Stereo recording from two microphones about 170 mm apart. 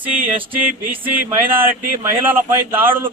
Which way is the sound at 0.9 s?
10° right (ahead or behind).